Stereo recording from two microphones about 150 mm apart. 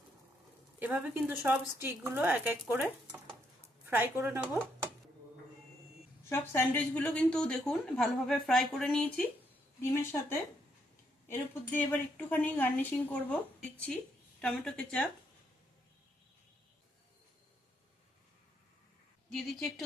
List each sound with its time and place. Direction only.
0.8 s speech: 10° right (ahead or behind)
6.2 s speech: 15° left (ahead or behind)
9.9 s speech: 15° left (ahead or behind)
19.3 s speech: centre (ahead or behind)